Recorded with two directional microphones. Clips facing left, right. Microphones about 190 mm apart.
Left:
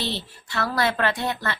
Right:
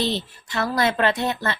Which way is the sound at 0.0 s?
20° right (ahead or behind).